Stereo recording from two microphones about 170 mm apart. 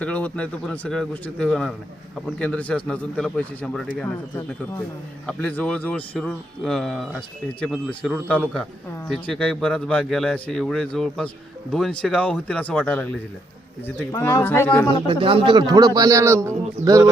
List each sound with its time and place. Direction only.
0.0 s a man's voice: 10° left (ahead or behind)
14.1 s speech: 25° left (ahead or behind)
14.4 s a man's voice: 15° left (ahead or behind)
15.0 s a man's voice: 30° right (ahead or behind)